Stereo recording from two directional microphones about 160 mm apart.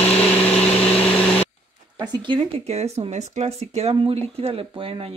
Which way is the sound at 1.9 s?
25° right (ahead or behind).